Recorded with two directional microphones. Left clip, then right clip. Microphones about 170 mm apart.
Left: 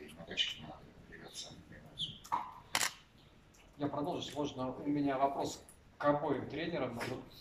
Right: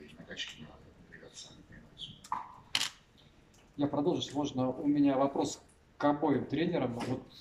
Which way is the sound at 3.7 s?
70° right (ahead or behind).